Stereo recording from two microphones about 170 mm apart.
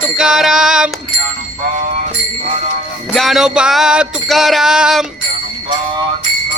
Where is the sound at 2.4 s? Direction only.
40° right (ahead or behind).